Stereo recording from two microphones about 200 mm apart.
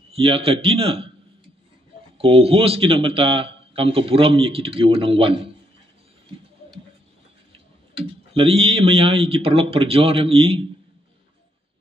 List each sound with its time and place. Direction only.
0.1 s a man's voice: 30° right (ahead or behind)
2.1 s a man's voice: 30° right (ahead or behind)
8.0 s a man's voice: 30° right (ahead or behind)